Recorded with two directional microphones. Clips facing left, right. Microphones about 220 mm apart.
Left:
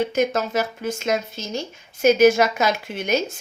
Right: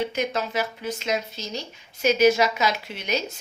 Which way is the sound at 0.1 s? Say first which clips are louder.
Left 5 dB; 45° left (ahead or behind).